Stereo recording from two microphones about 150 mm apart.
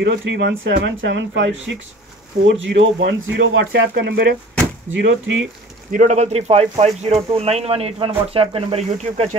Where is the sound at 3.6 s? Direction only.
90° right.